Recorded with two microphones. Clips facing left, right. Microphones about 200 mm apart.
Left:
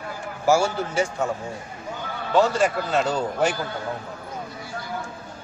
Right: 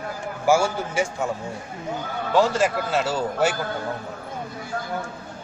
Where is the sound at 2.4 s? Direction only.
5° right (ahead or behind).